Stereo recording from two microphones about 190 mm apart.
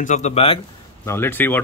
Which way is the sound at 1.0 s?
10° left (ahead or behind).